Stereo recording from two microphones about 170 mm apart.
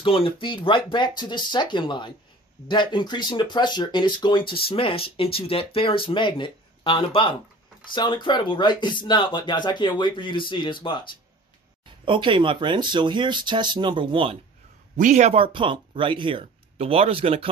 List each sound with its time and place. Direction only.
0.0 s speech: 30° left (ahead or behind)
12.0 s speech: 30° right (ahead or behind)
15.0 s speech: 45° right (ahead or behind)